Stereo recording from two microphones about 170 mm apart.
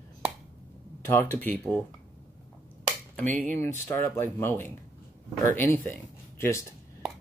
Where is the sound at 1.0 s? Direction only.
10° left (ahead or behind).